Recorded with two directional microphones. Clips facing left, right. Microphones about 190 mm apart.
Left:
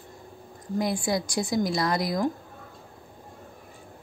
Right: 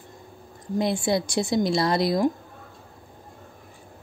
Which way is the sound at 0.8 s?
25° right (ahead or behind).